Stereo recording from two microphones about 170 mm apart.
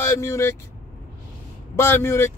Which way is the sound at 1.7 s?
15° left (ahead or behind).